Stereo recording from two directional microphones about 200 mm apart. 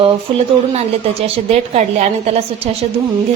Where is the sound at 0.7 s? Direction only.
30° right (ahead or behind).